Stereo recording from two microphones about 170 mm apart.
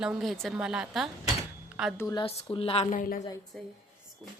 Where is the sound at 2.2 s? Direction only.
35° left (ahead or behind).